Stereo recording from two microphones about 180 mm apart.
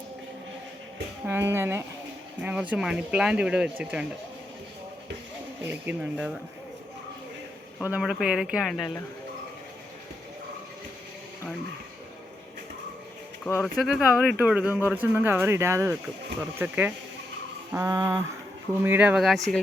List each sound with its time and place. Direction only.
1.3 s speech: 15° right (ahead or behind)
5.6 s speech: 10° right (ahead or behind)
7.9 s speech: 5° right (ahead or behind)
13.4 s speech: 10° left (ahead or behind)
13.8 s speech: centre (ahead or behind)